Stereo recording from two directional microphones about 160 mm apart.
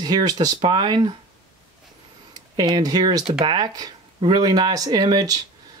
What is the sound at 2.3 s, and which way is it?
Speech, 25° right (ahead or behind).